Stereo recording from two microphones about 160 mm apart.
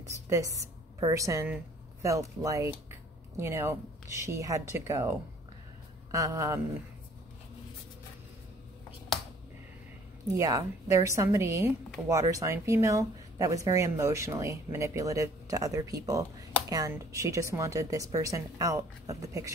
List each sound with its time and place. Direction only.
0.3 s a woman's voice: 20° right (ahead or behind)
6.1 s speech: 20° right (ahead or behind)
10.3 s speech: 20° right (ahead or behind)